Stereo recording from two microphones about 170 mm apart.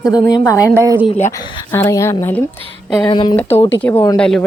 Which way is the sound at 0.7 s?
15° right (ahead or behind).